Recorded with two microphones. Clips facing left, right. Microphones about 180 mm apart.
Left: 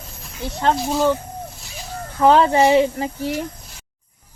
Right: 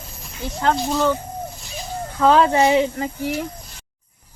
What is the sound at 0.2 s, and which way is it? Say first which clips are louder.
Snake: left 1 dB; centre (ahead or behind).